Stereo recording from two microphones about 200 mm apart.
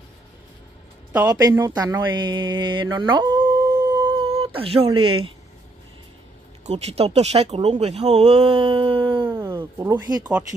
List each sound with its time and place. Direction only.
1.3 s speech: 15° right (ahead or behind)
6.6 s speech: 35° right (ahead or behind)
9.3 s speech: 15° right (ahead or behind)